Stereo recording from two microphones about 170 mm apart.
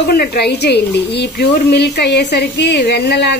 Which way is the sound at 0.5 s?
75° left (ahead or behind).